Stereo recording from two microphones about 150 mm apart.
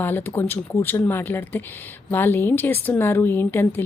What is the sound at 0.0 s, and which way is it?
A woman's voice, 15° left (ahead or behind).